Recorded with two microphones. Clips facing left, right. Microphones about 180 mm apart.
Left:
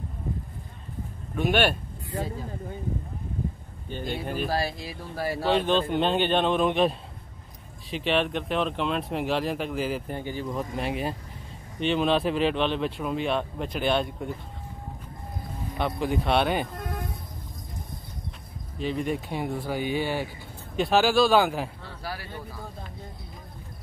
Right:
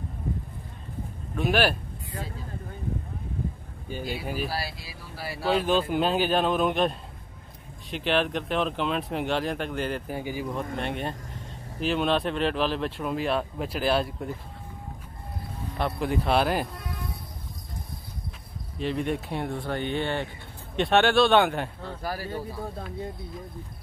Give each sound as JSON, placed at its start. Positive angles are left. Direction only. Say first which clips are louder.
{"t": 1.3, "sound": "speech", "louder": "left 1 dB", "side_deg": 0}
{"t": 3.9, "sound": "speech", "louder": "left 1 dB", "side_deg": -5}
{"t": 4.5, "sound": "speech", "louder": "left 5 dB", "side_deg": 50}
{"t": 5.5, "sound": "speech", "louder": "even", "side_deg": -5}
{"t": 10.1, "sound": "speech", "louder": "right 1 dB", "side_deg": -10}
{"t": 10.8, "sound": "speech", "louder": "left 2 dB", "side_deg": 5}
{"t": 15.8, "sound": "speech", "louder": "even", "side_deg": 0}
{"t": 16.7, "sound": "music", "louder": "left 4 dB", "side_deg": 45}
{"t": 18.8, "sound": "speech", "louder": "even", "side_deg": 0}
{"t": 21.8, "sound": "a man's voice", "louder": "right 4 dB", "side_deg": -45}